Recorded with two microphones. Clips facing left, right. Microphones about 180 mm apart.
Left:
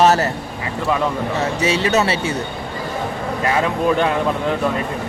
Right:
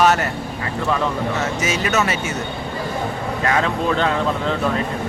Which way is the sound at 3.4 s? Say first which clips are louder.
Left 2 dB; 10° left (ahead or behind).